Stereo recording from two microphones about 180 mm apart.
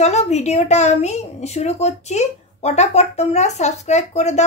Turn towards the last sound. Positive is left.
turn(degrees=40)  # may be behind; listen again after turning